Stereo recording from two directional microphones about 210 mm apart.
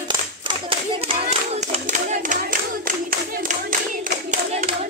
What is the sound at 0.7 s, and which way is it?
Clapping, 30° right (ahead or behind).